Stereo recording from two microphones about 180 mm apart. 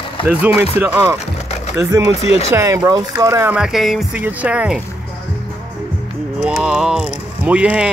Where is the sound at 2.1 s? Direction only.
35° left (ahead or behind).